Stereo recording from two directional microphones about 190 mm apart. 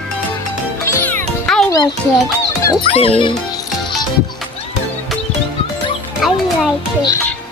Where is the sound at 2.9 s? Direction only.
25° left (ahead or behind).